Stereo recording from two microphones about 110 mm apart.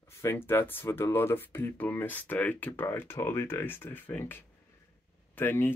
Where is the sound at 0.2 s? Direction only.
20° left (ahead or behind).